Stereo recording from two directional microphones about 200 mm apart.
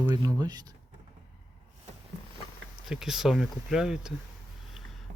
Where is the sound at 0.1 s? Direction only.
20° right (ahead or behind).